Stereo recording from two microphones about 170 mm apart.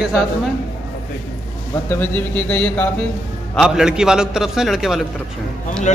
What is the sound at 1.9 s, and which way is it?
Speech, 10° left (ahead or behind).